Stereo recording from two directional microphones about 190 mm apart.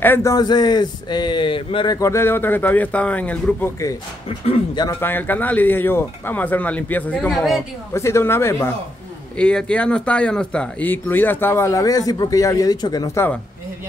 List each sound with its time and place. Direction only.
0.0 s speech: 15° left (ahead or behind)
2.0 s speech: 15° left (ahead or behind)
4.5 s speech: 20° left (ahead or behind)
5.0 s speech: 10° left (ahead or behind)
7.9 s speech: 15° left (ahead or behind)